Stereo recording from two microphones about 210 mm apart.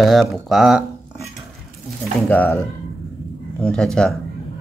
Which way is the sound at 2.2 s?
5° left (ahead or behind).